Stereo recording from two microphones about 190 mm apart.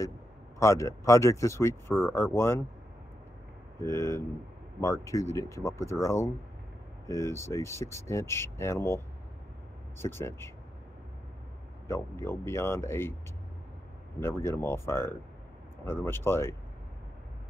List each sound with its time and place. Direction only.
0.6 s speech: 15° left (ahead or behind)
3.8 s speech: 15° left (ahead or behind)
11.9 s speech: 15° left (ahead or behind)
14.2 s speech: 15° left (ahead or behind)